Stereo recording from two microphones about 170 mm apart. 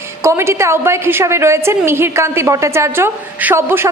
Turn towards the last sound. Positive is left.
turn(degrees=-15)  # may be behind; listen again after turning